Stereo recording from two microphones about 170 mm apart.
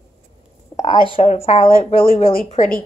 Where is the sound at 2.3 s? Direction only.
50° left (ahead or behind).